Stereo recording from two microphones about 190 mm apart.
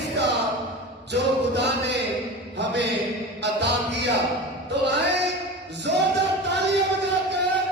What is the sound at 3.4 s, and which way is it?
Music, 65° right (ahead or behind).